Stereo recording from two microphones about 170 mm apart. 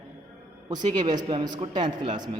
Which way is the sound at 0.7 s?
45° right (ahead or behind).